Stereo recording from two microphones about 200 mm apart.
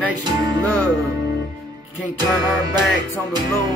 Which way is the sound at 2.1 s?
20° right (ahead or behind).